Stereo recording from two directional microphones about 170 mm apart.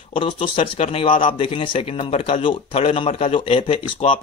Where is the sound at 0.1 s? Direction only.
35° left (ahead or behind).